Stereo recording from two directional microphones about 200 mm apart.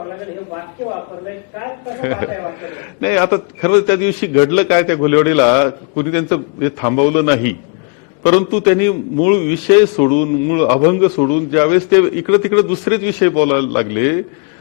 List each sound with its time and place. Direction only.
1.6 s a man's voice: 15° left (ahead or behind)